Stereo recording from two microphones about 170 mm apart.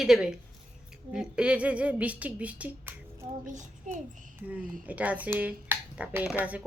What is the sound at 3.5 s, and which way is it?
Speech, 50° right (ahead or behind).